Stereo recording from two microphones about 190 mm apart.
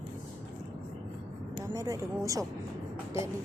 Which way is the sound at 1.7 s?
15° right (ahead or behind).